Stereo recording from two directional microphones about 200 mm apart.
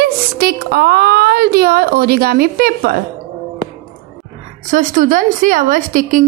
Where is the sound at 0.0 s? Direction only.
50° right (ahead or behind).